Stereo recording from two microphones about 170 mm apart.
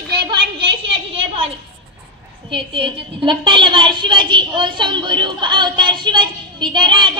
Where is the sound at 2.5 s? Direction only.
30° right (ahead or behind).